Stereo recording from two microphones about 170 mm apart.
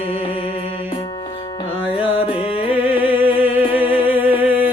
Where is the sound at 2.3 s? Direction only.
30° left (ahead or behind).